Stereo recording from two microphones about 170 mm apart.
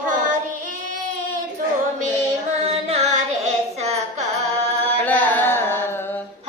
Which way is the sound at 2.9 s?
40° right (ahead or behind).